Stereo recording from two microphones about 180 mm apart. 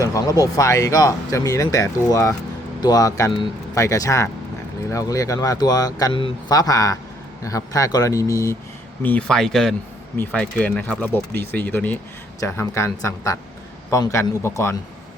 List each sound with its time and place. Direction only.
0.0 s speech: 20° left (ahead or behind)
9.0 s speech: 5° left (ahead or behind)